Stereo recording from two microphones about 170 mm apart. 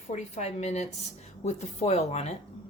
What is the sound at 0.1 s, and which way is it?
A woman's voice, 40° left (ahead or behind).